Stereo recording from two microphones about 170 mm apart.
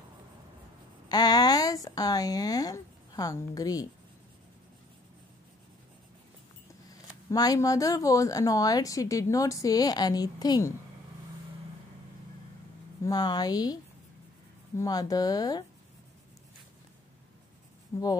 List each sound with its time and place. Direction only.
1.0 s a sound: 25° left (ahead or behind)
1.9 s speech: 20° left (ahead or behind)
7.2 s speech: 20° left (ahead or behind)
13.0 s speech: 20° left (ahead or behind)
14.8 s speech: 20° left (ahead or behind)
17.9 s speech: 15° left (ahead or behind)